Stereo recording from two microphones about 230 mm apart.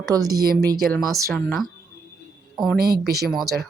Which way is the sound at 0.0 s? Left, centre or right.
Centre.